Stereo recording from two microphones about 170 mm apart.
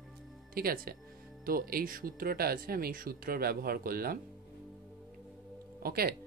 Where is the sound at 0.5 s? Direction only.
60° right (ahead or behind).